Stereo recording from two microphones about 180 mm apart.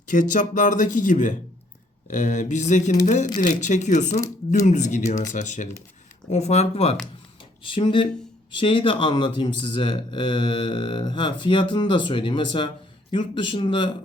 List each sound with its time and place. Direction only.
0.1 s speech: 45° left (ahead or behind); by 13.9 s 30° left (ahead or behind)